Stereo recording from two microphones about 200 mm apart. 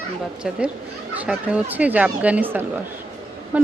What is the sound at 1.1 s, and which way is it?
Speech, 5° right (ahead or behind).